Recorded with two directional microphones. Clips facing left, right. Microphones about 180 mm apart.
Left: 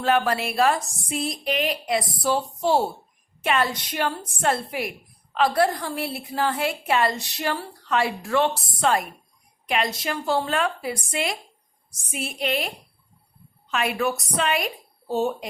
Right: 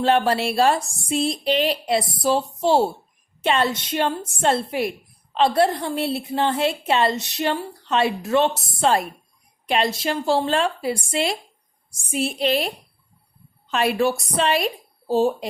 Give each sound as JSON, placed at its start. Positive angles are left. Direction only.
{"t": 0.0, "sound": "a woman's voice", "side_deg": -30}